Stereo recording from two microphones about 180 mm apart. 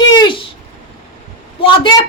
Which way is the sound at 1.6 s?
30° left (ahead or behind).